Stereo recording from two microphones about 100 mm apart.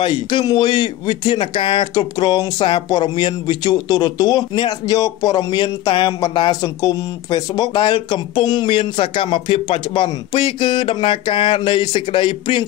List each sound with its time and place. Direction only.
0.0 s speech: 50° left (ahead or behind)
7.7 s speech: 55° left (ahead or behind)
8.6 s speech: 65° left (ahead or behind)